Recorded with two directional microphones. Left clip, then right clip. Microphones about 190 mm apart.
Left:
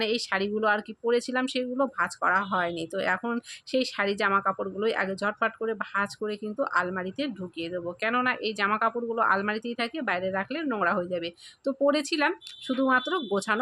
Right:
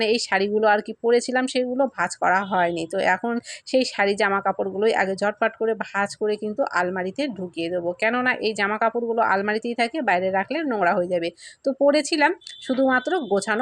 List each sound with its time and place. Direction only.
0.0 s speech: 20° right (ahead or behind)